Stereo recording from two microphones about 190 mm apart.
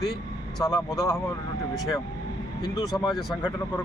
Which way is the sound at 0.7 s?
20° left (ahead or behind).